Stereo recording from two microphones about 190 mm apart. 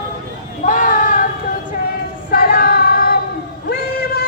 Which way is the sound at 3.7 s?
55° left (ahead or behind).